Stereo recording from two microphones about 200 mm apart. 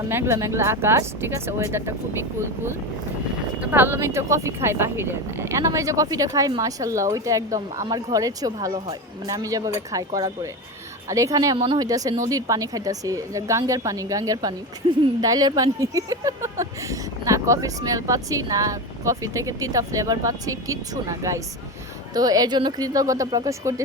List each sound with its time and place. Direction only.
0.1 s speech: 10° right (ahead or behind)